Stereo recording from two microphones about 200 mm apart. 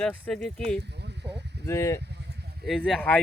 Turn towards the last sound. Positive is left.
turn(degrees=5)  # may be behind; listen again after turning